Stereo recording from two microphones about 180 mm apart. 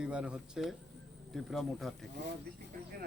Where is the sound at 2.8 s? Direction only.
50° right (ahead or behind).